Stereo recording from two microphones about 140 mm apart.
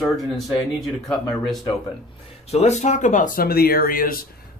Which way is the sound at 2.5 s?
55° left (ahead or behind).